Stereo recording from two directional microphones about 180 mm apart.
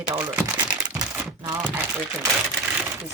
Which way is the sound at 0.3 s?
10° right (ahead or behind).